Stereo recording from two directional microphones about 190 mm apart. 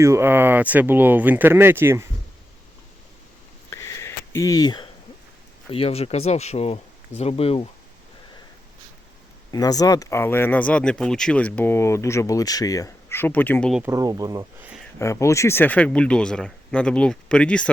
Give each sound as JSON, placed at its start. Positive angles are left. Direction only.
{"t": 0.0, "sound": "speech", "side_deg": -15}
{"t": 3.7, "sound": "a sound", "side_deg": 15}
{"t": 5.7, "sound": "speech", "side_deg": 30}
{"t": 9.5, "sound": "speech", "side_deg": 20}
{"t": 13.8, "sound": "speech", "side_deg": -20}
{"t": 14.9, "sound": "speech", "side_deg": 15}